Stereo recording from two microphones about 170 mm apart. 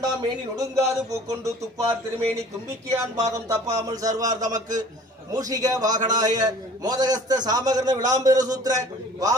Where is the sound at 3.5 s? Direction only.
20° right (ahead or behind).